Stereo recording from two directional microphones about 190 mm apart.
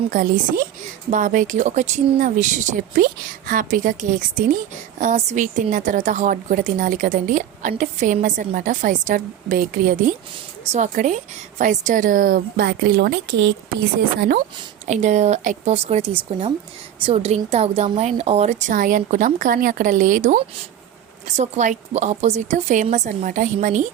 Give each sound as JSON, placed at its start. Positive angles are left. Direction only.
{"t": 1.1, "sound": "a woman's voice", "side_deg": -40}
{"t": 14.2, "sound": "a woman's voice", "side_deg": -50}
{"t": 14.8, "sound": "a woman's voice", "side_deg": -40}